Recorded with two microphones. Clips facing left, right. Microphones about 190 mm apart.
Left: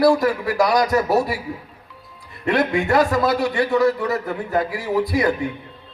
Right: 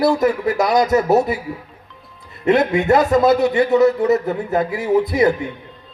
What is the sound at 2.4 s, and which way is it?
A man's voice, 20° right (ahead or behind).